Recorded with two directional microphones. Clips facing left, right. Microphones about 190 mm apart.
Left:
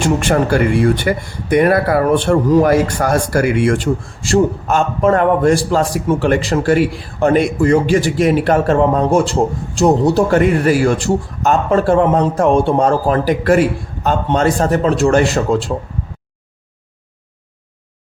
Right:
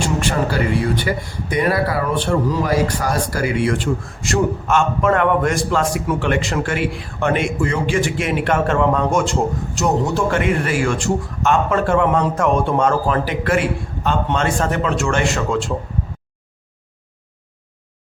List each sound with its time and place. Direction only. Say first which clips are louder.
0.2 s speech: left 5 dB; 50° left (ahead or behind)
4.2 s a man's voice: left 6 dB; 30° left (ahead or behind)